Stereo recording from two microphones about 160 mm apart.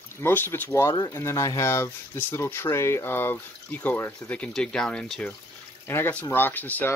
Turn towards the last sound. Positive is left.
turn(degrees=10)  # may be behind; listen again after turning